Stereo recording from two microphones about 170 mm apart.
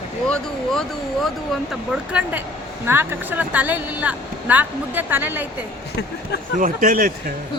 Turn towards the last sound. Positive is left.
turn(degrees=-55)  # may be behind; listen again after turning